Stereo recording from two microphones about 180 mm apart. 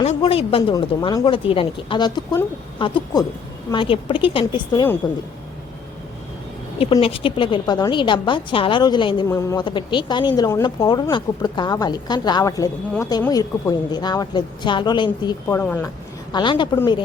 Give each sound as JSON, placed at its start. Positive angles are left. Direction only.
{"t": 0.3, "sound": "speech", "side_deg": 35}
{"t": 7.0, "sound": "speech", "side_deg": 30}
{"t": 15.4, "sound": "speech", "side_deg": 10}
{"t": 16.3, "sound": "speech", "side_deg": 25}